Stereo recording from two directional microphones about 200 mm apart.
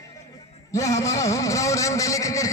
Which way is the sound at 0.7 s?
15° left (ahead or behind).